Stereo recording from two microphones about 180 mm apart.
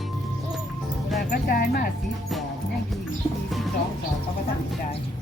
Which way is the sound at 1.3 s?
55° left (ahead or behind).